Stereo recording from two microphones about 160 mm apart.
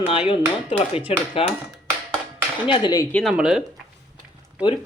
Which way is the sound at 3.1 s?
5° left (ahead or behind).